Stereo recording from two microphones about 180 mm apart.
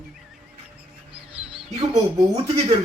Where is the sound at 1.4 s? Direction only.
5° right (ahead or behind).